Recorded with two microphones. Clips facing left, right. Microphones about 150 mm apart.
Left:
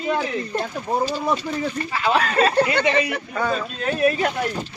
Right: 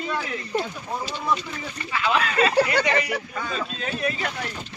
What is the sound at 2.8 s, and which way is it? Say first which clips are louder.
Speech: left 4 dB; 20° left (ahead or behind).